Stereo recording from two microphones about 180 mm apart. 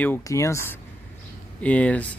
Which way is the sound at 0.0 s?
15° left (ahead or behind).